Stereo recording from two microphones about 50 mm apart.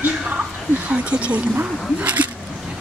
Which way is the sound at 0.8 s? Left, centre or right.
Right.